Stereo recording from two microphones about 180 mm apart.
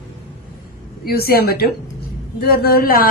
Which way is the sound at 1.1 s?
60° left (ahead or behind).